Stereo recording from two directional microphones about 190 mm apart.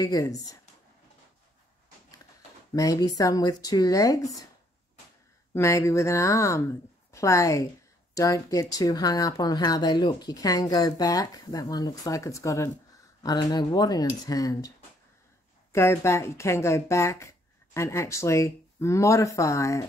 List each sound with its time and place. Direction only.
0.0 s speech: 20° left (ahead or behind)
2.7 s speech: 20° left (ahead or behind)
5.5 s speech: 15° left (ahead or behind)
15.7 s speech: 15° left (ahead or behind)